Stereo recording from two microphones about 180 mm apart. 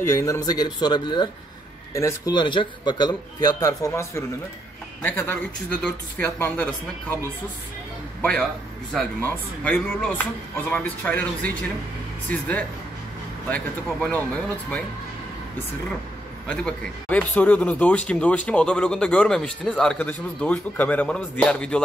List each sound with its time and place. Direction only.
0.0 s a man's voice: 15° left (ahead or behind)
12.3 s speech: 10° left (ahead or behind)
14.1 s speech: 5° left (ahead or behind)
16.4 s speech: 5° left (ahead or behind)